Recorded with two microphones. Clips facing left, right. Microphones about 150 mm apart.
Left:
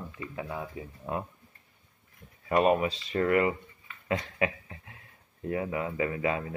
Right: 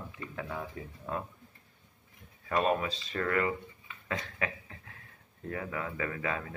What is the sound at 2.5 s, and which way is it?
Speech, 15° left (ahead or behind).